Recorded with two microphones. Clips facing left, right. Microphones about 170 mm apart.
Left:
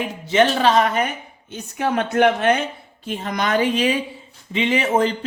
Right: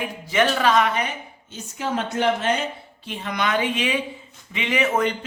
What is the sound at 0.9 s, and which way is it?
Speech, 55° left (ahead or behind).